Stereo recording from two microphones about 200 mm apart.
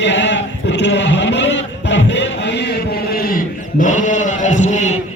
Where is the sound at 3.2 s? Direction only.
45° left (ahead or behind).